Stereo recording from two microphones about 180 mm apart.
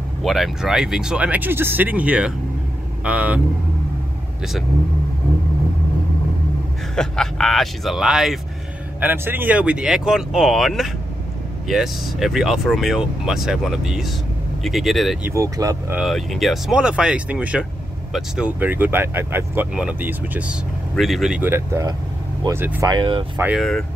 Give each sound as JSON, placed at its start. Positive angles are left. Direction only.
{"t": 0.2, "sound": "speech", "side_deg": 0}
{"t": 7.0, "sound": "speech", "side_deg": 5}
{"t": 15.3, "sound": "speech", "side_deg": -20}
{"t": 16.0, "sound": "speech", "side_deg": 0}
{"t": 22.8, "sound": "speech", "side_deg": -25}
{"t": 23.3, "sound": "speech", "side_deg": -10}